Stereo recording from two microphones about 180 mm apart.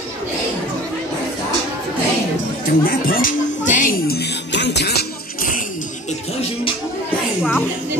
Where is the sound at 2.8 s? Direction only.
55° left (ahead or behind).